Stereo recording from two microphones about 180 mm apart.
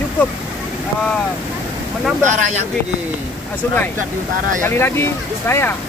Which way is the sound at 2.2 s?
40° right (ahead or behind).